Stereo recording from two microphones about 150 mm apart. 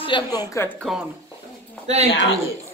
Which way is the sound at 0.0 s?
30° left (ahead or behind).